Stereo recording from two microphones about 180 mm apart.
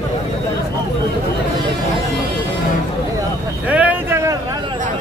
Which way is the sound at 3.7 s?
10° right (ahead or behind).